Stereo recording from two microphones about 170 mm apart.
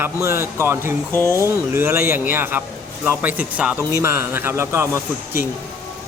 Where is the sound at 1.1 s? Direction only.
15° left (ahead or behind).